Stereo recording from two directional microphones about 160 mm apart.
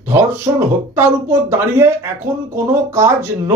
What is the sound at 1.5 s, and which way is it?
Speech, 15° right (ahead or behind).